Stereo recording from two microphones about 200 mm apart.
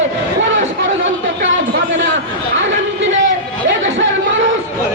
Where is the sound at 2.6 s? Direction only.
70° right (ahead or behind).